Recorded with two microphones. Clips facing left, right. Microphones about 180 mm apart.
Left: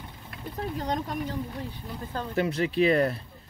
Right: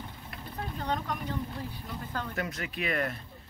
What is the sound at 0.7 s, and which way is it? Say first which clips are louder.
Speech: left 2 dB; 35° left (ahead or behind).